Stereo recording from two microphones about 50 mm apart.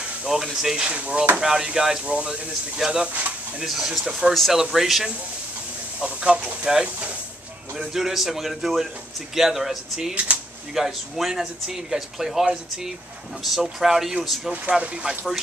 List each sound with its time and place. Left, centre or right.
0.2 s speech: centre; by 1.2 s right
1.4 s speech: centre
2.0 s speech: right
4.3 s a man's voice: centre
5.9 s speech: right
7.9 s a man's voice: centre
10.1 s speech: right
10.7 s speech: centre
14.5 s speech: right